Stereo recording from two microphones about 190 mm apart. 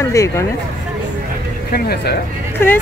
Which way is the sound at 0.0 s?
15° left (ahead or behind).